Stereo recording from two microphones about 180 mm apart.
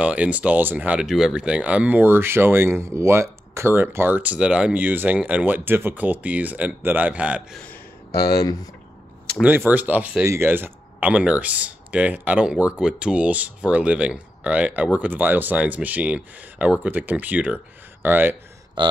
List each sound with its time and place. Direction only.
0.0 s speech: 5° right (ahead or behind)
8.1 s speech: 60° left (ahead or behind)
9.7 s speech: 10° right (ahead or behind)
18.8 s speech: 25° right (ahead or behind)